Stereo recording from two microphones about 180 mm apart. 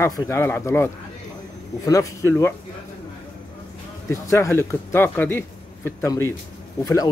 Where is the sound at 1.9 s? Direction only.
15° left (ahead or behind).